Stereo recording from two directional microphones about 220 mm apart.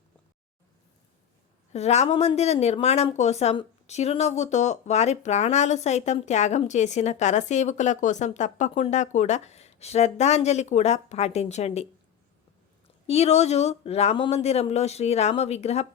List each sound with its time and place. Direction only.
1.7 s a woman's voice: 30° left (ahead or behind)
13.1 s speech: 30° left (ahead or behind)